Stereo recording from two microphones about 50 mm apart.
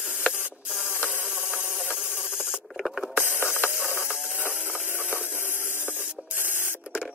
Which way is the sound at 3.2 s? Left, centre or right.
Right.